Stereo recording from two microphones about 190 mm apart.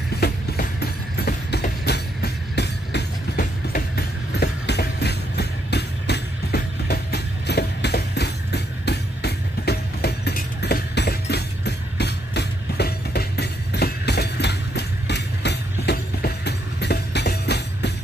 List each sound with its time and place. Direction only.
0.1 s train: 55° left (ahead or behind)